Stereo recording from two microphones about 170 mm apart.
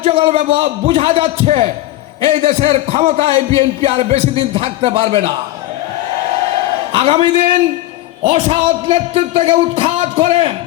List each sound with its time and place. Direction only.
0.0 s a man's voice: 35° right (ahead or behind)
6.9 s a man's voice: 35° right (ahead or behind)